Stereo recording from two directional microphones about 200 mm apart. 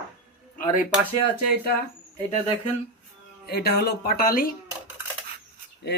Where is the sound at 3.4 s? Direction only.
50° left (ahead or behind).